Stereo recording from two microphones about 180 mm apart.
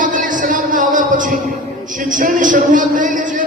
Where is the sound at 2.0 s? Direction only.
50° right (ahead or behind).